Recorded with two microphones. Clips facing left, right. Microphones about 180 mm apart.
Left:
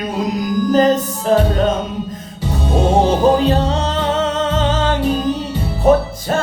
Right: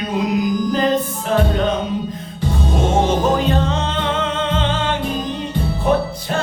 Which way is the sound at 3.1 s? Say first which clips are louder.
Left 4 dB; 35° left (ahead or behind).